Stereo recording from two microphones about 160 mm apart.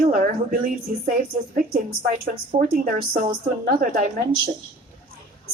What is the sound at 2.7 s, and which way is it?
A woman's voice, 65° right (ahead or behind).